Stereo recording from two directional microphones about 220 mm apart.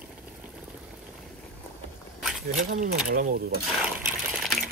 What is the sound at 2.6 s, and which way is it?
Speech, 35° right (ahead or behind).